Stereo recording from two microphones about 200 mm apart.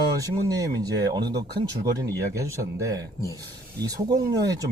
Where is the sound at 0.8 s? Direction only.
20° right (ahead or behind).